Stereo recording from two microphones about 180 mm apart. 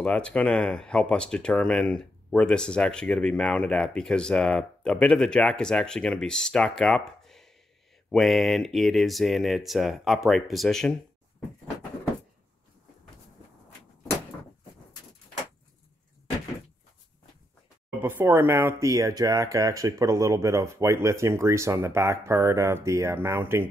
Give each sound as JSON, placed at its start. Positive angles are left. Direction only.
{"t": 0.0, "sound": "speech", "side_deg": 5}
{"t": 18.0, "sound": "speech", "side_deg": -10}